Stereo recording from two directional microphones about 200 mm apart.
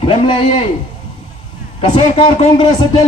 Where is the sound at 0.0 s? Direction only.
25° left (ahead or behind).